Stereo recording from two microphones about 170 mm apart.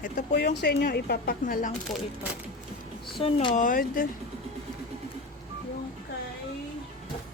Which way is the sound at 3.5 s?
50° left (ahead or behind).